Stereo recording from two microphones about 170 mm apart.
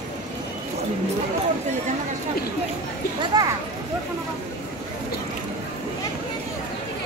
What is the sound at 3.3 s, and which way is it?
Speech, 20° right (ahead or behind).